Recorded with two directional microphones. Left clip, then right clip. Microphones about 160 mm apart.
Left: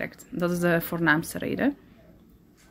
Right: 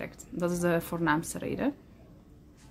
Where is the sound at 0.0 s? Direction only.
25° left (ahead or behind).